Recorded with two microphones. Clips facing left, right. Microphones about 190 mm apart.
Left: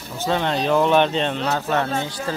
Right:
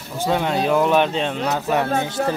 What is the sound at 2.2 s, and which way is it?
Speech, 60° right (ahead or behind).